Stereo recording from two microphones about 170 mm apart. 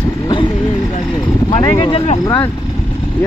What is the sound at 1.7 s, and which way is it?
Speech, 25° left (ahead or behind).